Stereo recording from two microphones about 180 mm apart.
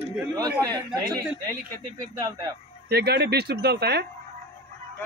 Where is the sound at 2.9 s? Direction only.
65° right (ahead or behind).